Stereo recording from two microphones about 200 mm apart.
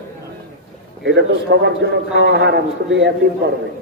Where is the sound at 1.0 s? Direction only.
60° right (ahead or behind).